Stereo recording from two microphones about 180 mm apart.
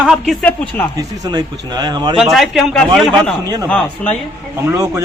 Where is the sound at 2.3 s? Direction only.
Centre (ahead or behind).